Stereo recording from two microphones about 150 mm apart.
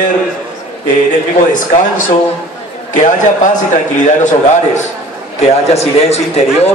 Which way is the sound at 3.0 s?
55° left (ahead or behind).